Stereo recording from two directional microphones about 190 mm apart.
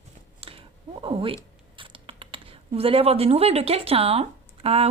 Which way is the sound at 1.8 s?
25° right (ahead or behind).